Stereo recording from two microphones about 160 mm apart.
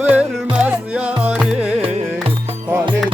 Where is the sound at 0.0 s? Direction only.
10° right (ahead or behind).